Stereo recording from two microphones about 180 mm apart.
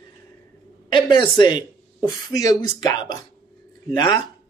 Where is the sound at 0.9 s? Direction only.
25° left (ahead or behind).